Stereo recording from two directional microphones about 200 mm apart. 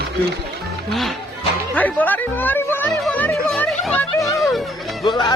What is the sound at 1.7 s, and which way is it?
Speech, 10° left (ahead or behind).